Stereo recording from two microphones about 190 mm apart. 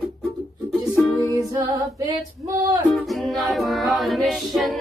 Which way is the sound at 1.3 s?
15° right (ahead or behind).